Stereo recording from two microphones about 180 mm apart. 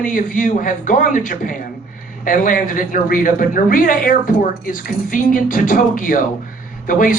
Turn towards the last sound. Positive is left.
turn(degrees=50)  # may be behind; listen again after turning